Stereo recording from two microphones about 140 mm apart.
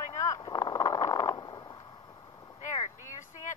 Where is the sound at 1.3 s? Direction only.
35° left (ahead or behind).